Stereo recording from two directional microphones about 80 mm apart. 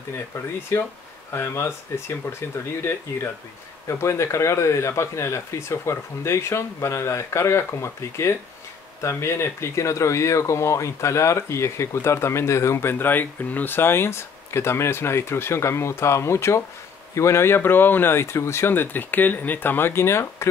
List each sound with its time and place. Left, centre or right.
1.3 s speech: left